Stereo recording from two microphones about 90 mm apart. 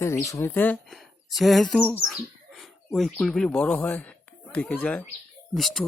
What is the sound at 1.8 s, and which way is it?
Speech, 20° left (ahead or behind).